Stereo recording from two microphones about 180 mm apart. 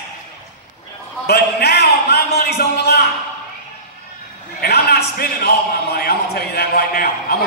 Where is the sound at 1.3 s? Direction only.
65° left (ahead or behind).